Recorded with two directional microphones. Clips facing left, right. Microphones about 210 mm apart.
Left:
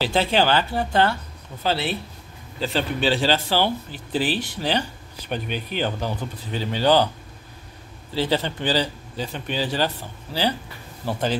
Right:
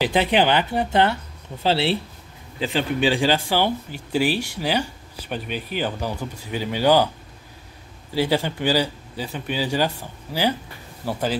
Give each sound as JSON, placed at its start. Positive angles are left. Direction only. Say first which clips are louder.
{"t": 0.0, "sound": "speech", "louder": "right 1 dB", "side_deg": -15}
{"t": 2.6, "sound": "speech", "louder": "right 2 dB", "side_deg": -15}
{"t": 8.1, "sound": "speech", "louder": "right 2 dB", "side_deg": -10}